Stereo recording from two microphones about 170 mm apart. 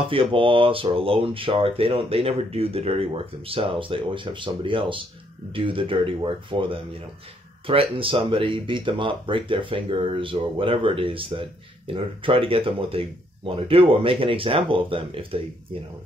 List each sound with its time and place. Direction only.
0.1 s speech: 30° right (ahead or behind)